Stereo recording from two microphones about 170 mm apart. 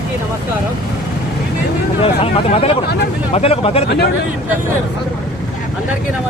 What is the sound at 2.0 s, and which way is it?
Speech, 35° left (ahead or behind).